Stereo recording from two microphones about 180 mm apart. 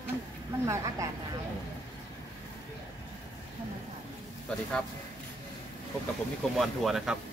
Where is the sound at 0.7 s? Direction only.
15° right (ahead or behind).